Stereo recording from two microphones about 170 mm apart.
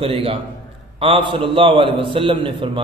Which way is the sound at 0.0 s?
35° right (ahead or behind).